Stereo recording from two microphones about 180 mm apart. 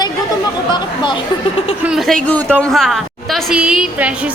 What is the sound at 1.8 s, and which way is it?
A woman's voice, centre (ahead or behind).